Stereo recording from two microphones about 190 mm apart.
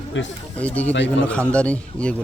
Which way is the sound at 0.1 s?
75° left (ahead or behind).